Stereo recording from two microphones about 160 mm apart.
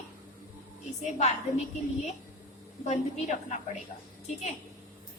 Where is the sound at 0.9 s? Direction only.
45° left (ahead or behind).